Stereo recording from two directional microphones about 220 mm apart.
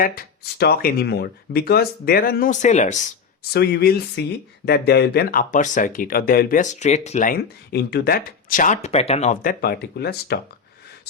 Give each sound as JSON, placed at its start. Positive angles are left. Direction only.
{"t": 0.0, "sound": "speech", "side_deg": 40}
{"t": 3.5, "sound": "speech", "side_deg": 45}